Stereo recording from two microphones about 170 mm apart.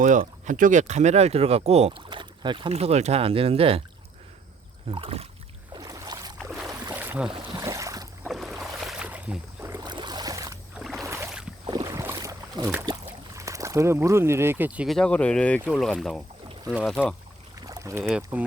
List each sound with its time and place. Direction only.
0.0 s speech: 50° right (ahead or behind)
2.0 s speech: 30° right (ahead or behind)
4.9 s rowboat: 30° right (ahead or behind)
5.7 s boat: 20° right (ahead or behind)
6.9 s boat: 10° right (ahead or behind)
7.3 s boat: 25° right (ahead or behind)
8.3 s boat: centre (ahead or behind); by 10.6 s 20° right (ahead or behind)
10.8 s a sound: 5° right (ahead or behind)
11.0 s boat: 15° right (ahead or behind)
12.8 s speech: 20° right (ahead or behind); by 17.2 s 5° left (ahead or behind)
17.7 s boat: 20° right (ahead or behind)
18.2 s speech: 10° right (ahead or behind)